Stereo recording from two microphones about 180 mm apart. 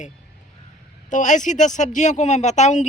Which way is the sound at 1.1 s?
45° left (ahead or behind).